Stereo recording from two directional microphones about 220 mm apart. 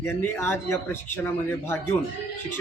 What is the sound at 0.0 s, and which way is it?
Speech, 10° left (ahead or behind).